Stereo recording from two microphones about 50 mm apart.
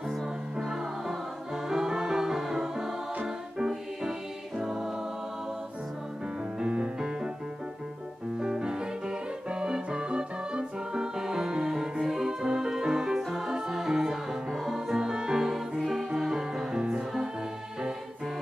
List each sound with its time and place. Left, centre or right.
0.7 s music: centre
6.6 s music: right
8.4 s music: centre